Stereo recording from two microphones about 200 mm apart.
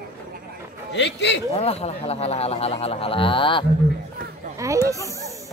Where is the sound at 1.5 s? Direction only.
30° left (ahead or behind).